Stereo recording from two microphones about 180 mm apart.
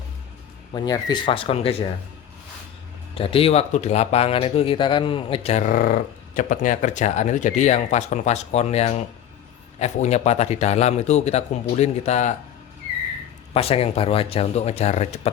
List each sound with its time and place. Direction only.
0.7 s speech: 20° left (ahead or behind)
3.2 s speech: 30° left (ahead or behind)
13.5 s speech: 35° left (ahead or behind)